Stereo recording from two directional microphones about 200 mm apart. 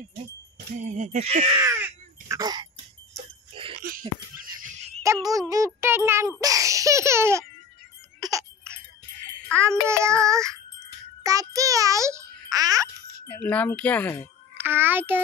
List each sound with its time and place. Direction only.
0.8 s speech: 35° right (ahead or behind)
1.6 s crow: 15° right (ahead or behind)
3.2 s a sound: 25° right (ahead or behind)
5.0 s music: 15° right (ahead or behind)
5.8 s a child's voice: 10° right (ahead or behind)
6.4 s baby laughter: 15° right (ahead or behind)
8.2 s a sound: 15° right (ahead or behind)
9.5 s a child's voice: 15° right (ahead or behind)
9.8 s child singing: 15° right (ahead or behind)
11.2 s a child's voice: 15° right (ahead or behind)
13.3 s wind chime: 10° left (ahead or behind)
14.6 s child singing: 10° right (ahead or behind)